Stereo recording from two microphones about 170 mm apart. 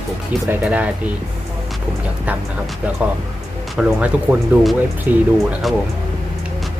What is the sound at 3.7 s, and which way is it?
Speech, 5° right (ahead or behind).